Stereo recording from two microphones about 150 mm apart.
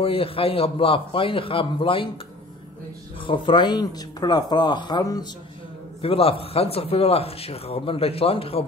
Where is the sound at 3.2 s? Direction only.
35° left (ahead or behind).